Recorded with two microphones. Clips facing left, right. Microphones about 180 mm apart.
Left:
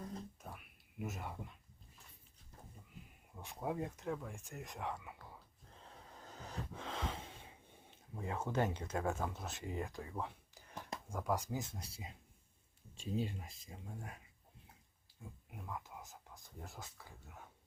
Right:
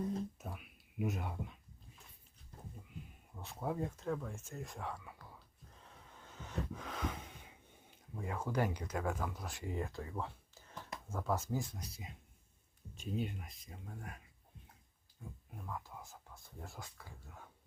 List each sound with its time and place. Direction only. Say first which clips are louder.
0.9 s speech: right 5 dB; centre (ahead or behind)
3.4 s speech: right 1 dB; 15° left (ahead or behind)
5.7 s gasp: left 3 dB; 35° left (ahead or behind); by 10.8 s 15° left (ahead or behind)
11.1 s speech: right 1 dB; 15° left (ahead or behind)
15.2 s speech: right 1 dB; 15° left (ahead or behind)